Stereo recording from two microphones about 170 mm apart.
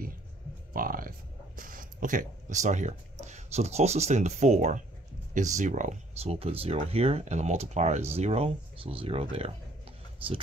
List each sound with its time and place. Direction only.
0.7 s speech: 55° right (ahead or behind); by 9.5 s 35° right (ahead or behind)